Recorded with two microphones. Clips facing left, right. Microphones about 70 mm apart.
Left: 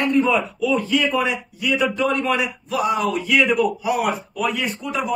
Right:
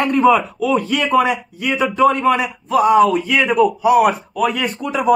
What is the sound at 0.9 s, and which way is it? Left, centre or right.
A man's voice, right.